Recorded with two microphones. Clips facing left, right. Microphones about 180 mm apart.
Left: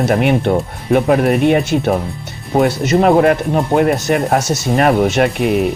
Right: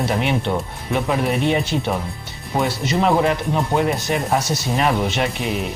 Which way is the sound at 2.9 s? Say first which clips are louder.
Left 7 dB; 50° left (ahead or behind).